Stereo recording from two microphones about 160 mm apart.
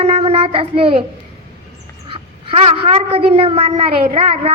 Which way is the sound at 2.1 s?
35° right (ahead or behind).